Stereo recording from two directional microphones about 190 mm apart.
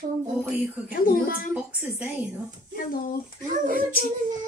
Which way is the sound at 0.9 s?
50° left (ahead or behind).